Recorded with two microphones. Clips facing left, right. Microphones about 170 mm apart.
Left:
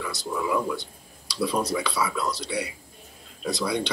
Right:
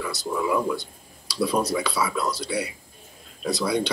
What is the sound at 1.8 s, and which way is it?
Speech, 5° right (ahead or behind).